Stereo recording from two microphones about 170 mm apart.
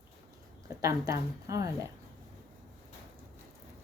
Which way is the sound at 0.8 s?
20° right (ahead or behind).